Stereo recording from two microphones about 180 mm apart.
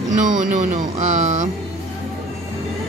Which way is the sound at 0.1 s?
45° right (ahead or behind).